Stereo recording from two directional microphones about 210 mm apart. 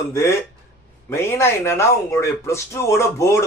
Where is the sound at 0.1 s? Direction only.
10° left (ahead or behind).